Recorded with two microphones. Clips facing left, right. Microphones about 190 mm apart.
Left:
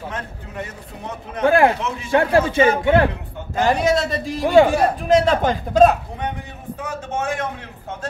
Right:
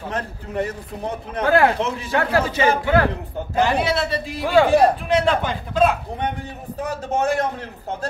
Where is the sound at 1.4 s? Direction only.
25° left (ahead or behind).